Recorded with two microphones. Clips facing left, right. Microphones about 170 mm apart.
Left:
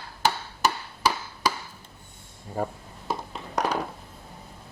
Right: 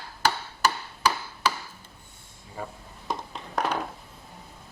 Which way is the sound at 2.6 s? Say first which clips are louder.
Left 8 dB; 45° left (ahead or behind).